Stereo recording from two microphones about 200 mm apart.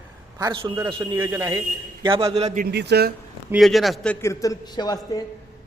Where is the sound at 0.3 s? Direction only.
20° right (ahead or behind).